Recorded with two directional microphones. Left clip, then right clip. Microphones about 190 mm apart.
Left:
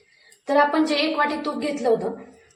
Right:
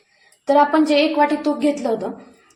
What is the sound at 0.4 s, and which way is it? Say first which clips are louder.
Speech: right 4 dB; 25° right (ahead or behind).